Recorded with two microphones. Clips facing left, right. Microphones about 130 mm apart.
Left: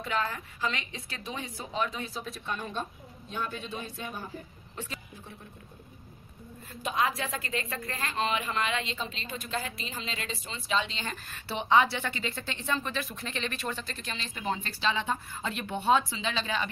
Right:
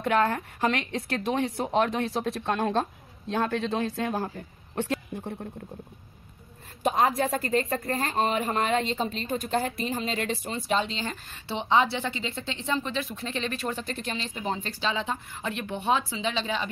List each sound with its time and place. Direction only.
0.0 s speech: 60° right (ahead or behind); by 4.3 s 80° right
4.7 s speech: 65° right (ahead or behind)
6.8 s a woman's voice: 50° right (ahead or behind)
10.3 s speech: 60° right (ahead or behind)
10.8 s a woman's voice: 30° right (ahead or behind)
14.5 s a woman's voice: 25° right (ahead or behind)